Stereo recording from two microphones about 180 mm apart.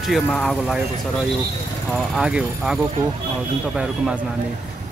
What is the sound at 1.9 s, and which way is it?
Speech, 5° right (ahead or behind).